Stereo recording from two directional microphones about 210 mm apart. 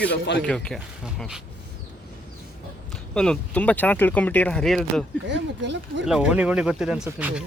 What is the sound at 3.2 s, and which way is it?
Speech, 5° left (ahead or behind).